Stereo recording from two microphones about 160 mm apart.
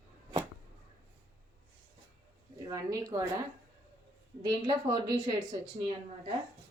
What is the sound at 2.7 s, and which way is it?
Speech, 20° right (ahead or behind).